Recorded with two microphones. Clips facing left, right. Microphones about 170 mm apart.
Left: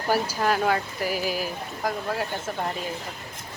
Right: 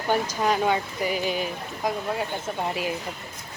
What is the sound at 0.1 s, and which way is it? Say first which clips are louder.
Speech: even; 5° left (ahead or behind).